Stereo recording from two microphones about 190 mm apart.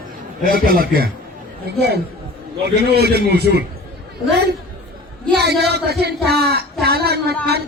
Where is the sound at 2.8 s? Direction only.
55° right (ahead or behind).